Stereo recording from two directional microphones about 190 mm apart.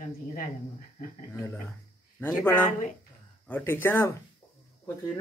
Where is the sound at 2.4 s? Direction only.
10° left (ahead or behind).